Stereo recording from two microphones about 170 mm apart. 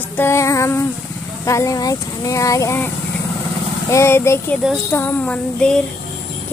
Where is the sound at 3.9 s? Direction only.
15° left (ahead or behind).